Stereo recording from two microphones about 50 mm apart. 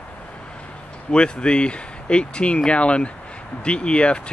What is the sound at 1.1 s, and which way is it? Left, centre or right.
Speech, centre.